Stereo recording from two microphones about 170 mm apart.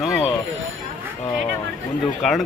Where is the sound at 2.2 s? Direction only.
5° left (ahead or behind).